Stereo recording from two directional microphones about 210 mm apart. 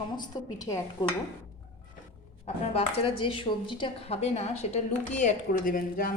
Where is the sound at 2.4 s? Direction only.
30° left (ahead or behind).